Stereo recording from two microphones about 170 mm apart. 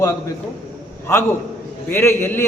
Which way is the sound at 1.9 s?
10° left (ahead or behind).